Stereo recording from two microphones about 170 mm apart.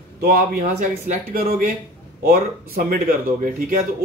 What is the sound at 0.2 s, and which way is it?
Speech, 55° right (ahead or behind).